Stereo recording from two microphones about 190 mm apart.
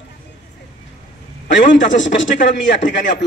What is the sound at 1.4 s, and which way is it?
A man's voice, 70° left (ahead or behind).